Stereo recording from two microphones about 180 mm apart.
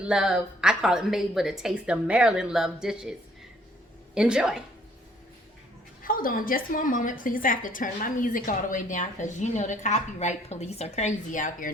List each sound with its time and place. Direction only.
0.0 s speech: 5° right (ahead or behind)
6.0 s a woman's voice: 50° left (ahead or behind)